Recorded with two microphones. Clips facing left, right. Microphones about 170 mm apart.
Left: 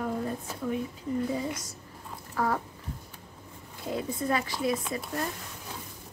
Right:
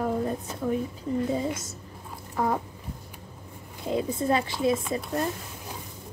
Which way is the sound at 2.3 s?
20° right (ahead or behind).